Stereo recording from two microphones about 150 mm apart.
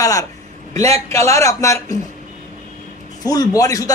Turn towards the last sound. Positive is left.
turn(degrees=25)  # may be behind; listen again after turning